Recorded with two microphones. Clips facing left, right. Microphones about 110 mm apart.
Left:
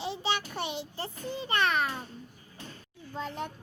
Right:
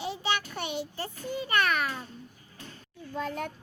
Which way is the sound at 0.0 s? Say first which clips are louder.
Right 1 dB; 30° left (ahead or behind).